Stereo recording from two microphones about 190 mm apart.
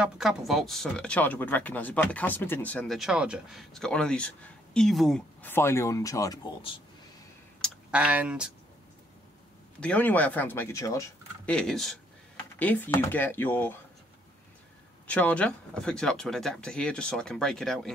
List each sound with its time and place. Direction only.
0.0 s speech: 5° right (ahead or behind)
5.4 s speech: 10° left (ahead or behind)
7.9 s speech: 5° right (ahead or behind)
9.8 s speech: 5° left (ahead or behind)
11.5 s speech: centre (ahead or behind)
15.0 s speech: 5° left (ahead or behind)